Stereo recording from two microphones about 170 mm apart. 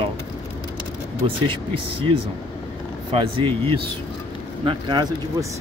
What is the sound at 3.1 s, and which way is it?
Speech, 30° right (ahead or behind).